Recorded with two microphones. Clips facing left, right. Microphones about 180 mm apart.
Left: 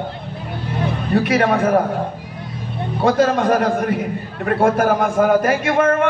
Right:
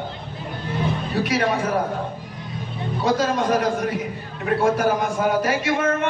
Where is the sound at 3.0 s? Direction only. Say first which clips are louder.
Left 5 dB; 55° left (ahead or behind).